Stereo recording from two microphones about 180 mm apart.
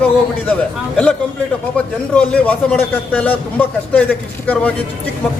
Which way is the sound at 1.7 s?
5° left (ahead or behind).